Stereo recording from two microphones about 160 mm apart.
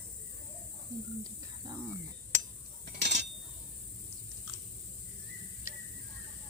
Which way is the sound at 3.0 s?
90° right.